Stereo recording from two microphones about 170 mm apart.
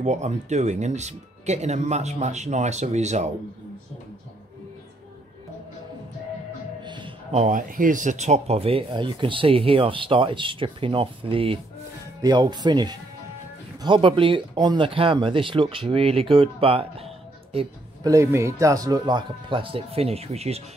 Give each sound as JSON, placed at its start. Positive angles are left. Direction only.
{"t": 0.0, "sound": "speech", "side_deg": -45}
{"t": 6.8, "sound": "a sound", "side_deg": -25}
{"t": 7.3, "sound": "speech", "side_deg": -45}
{"t": 18.0, "sound": "speech", "side_deg": -15}